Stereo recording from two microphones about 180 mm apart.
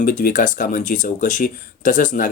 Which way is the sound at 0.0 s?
50° left (ahead or behind).